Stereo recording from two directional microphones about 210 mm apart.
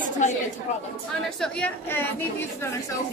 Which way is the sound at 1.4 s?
5° left (ahead or behind).